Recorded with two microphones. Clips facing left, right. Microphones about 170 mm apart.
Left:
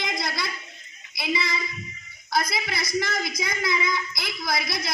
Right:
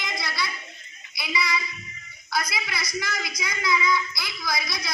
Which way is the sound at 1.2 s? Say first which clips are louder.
Left 1 dB; 55° left (ahead or behind).